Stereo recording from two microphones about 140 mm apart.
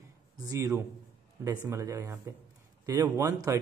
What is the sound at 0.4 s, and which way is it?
Speech, 25° right (ahead or behind).